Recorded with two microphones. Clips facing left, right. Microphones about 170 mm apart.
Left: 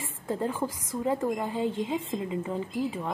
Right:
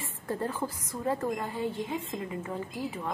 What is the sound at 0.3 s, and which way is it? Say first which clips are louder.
A woman's voice: left 3 dB; 10° left (ahead or behind).